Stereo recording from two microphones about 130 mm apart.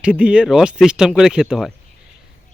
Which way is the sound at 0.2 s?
10° right (ahead or behind).